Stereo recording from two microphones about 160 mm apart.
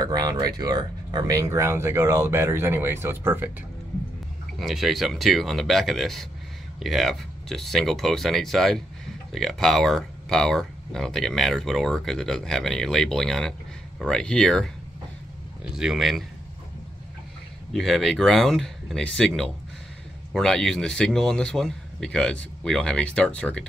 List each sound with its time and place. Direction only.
0.0 s speech: 25° right (ahead or behind)
4.6 s speech: centre (ahead or behind)
15.7 s speech: 5° right (ahead or behind)
17.7 s speech: centre (ahead or behind)